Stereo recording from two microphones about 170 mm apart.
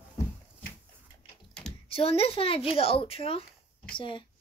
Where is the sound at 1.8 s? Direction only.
35° left (ahead or behind).